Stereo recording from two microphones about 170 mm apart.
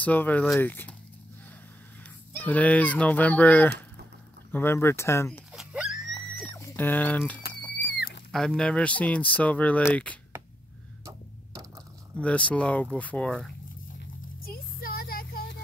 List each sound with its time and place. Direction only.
0.0 s speech: 10° left (ahead or behind)
2.3 s speech: 10° left (ahead or behind)
5.5 s screaming: 5° right (ahead or behind)
6.5 s speech: 15° left (ahead or behind)
7.8 s music: 75° left (ahead or behind)
8.3 s speech: centre (ahead or behind)
12.2 s speech: 5° left (ahead or behind)
14.4 s a sound: 60° left (ahead or behind)